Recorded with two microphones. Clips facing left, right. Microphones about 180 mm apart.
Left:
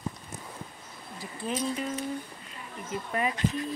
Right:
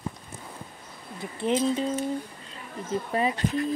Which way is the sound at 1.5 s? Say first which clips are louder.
Right 7 dB; 25° right (ahead or behind).